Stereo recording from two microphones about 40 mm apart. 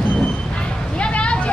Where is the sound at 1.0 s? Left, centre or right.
Left.